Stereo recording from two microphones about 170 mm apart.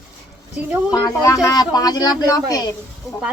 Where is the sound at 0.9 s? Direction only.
25° left (ahead or behind).